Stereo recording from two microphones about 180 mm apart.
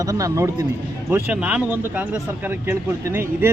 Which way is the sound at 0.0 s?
20° right (ahead or behind).